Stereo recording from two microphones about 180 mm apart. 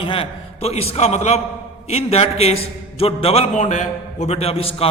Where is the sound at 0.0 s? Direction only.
30° left (ahead or behind).